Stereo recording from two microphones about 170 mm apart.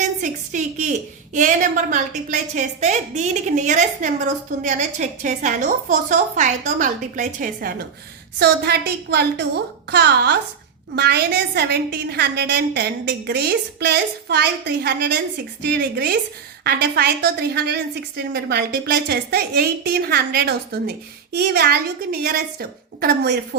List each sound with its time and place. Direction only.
0.2 s a woman's voice: 45° right (ahead or behind)
8.4 s a woman's voice: 75° right (ahead or behind)